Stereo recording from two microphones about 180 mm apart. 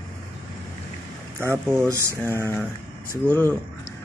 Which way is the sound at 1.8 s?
15° right (ahead or behind).